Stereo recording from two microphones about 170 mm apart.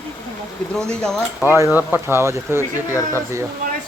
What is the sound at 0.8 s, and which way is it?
Speech, 5° left (ahead or behind).